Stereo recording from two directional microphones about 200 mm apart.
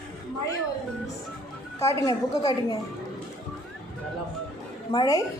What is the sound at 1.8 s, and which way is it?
Speech, 15° left (ahead or behind).